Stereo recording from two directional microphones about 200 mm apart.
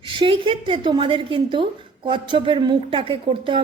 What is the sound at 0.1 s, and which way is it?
Speech, 25° right (ahead or behind).